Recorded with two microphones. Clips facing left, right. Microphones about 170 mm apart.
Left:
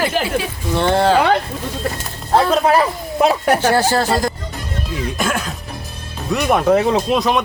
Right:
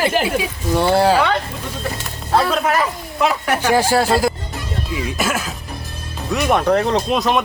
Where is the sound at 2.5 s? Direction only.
35° left (ahead or behind).